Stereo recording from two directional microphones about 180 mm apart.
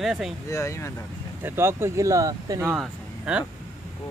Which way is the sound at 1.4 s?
15° right (ahead or behind).